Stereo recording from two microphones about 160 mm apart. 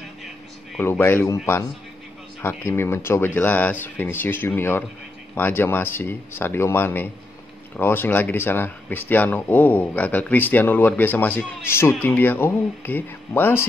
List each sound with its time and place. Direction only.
0.7 s speech: 15° left (ahead or behind)